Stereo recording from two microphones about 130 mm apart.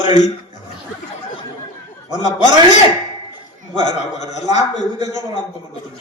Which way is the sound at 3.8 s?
65° left (ahead or behind).